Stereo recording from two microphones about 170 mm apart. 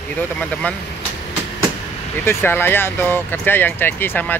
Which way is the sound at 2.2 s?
15° left (ahead or behind).